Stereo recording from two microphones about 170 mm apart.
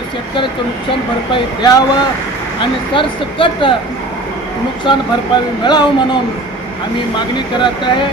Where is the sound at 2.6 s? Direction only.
30° left (ahead or behind).